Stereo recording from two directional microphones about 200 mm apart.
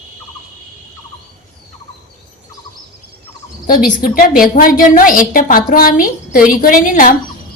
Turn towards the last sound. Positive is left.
turn(degrees=45)  # may be behind; listen again after turning